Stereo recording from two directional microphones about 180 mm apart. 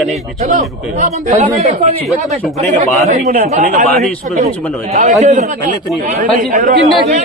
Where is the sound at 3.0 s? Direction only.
35° right (ahead or behind).